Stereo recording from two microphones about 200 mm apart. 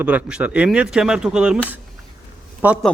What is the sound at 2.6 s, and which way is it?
Speech, 5° right (ahead or behind).